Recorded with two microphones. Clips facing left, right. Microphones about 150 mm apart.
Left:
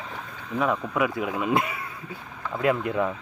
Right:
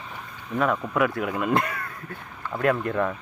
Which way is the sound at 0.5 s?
Centre (ahead or behind).